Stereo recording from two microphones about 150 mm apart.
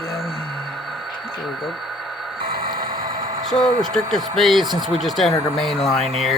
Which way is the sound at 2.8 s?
30° right (ahead or behind).